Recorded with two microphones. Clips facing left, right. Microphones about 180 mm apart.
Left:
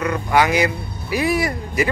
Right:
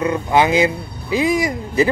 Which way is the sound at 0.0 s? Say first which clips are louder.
Right 2 dB; 25° right (ahead or behind).